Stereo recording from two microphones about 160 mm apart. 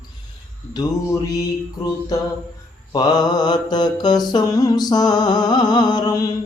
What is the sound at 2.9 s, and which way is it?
Mantra, 25° left (ahead or behind).